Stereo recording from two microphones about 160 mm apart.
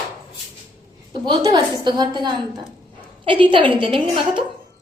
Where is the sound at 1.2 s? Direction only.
25° right (ahead or behind).